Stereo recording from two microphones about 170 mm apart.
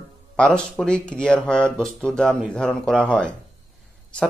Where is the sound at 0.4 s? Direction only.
5° left (ahead or behind).